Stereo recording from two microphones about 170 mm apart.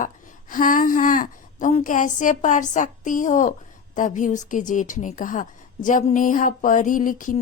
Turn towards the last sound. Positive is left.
turn(degrees=50)  # may be behind; listen again after turning